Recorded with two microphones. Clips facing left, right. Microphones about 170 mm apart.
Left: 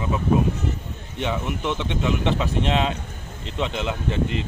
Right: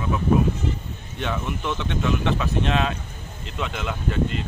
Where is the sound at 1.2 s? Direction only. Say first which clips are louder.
Left 2 dB; 15° left (ahead or behind).